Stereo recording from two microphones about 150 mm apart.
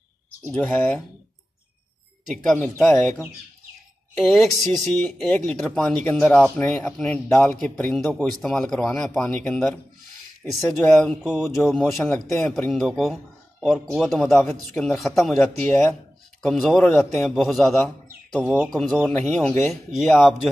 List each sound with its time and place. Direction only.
0.5 s speech: 5° left (ahead or behind)
2.3 s speech: 5° left (ahead or behind)
4.2 s a man's voice: centre (ahead or behind)
15.3 s a man's voice: 10° left (ahead or behind)